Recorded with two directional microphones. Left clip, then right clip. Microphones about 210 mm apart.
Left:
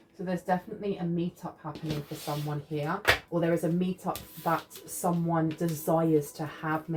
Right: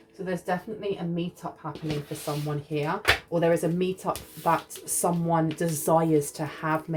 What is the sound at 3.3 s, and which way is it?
A woman's voice, 50° right (ahead or behind).